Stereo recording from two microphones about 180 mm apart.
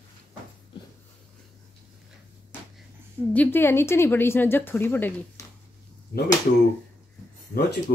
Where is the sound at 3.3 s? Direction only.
10° left (ahead or behind).